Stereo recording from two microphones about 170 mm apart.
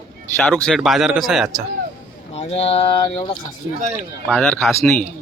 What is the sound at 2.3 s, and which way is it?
Speech, 40° left (ahead or behind).